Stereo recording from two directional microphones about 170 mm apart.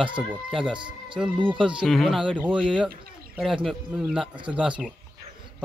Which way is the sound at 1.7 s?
Centre (ahead or behind).